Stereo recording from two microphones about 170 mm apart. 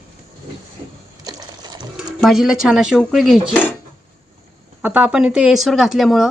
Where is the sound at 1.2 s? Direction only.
25° right (ahead or behind).